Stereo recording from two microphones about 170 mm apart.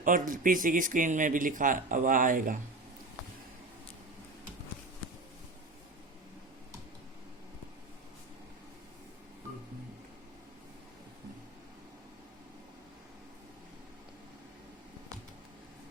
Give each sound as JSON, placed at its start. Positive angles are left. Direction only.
{"t": 0.0, "sound": "a man's voice", "side_deg": -50}